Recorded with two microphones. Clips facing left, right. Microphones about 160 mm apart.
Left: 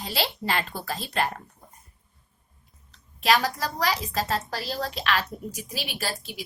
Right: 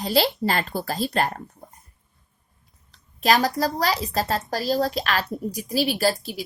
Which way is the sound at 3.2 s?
40° right (ahead or behind).